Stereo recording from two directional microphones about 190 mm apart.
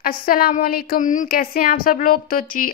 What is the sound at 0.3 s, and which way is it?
A woman's voice, 50° left (ahead or behind).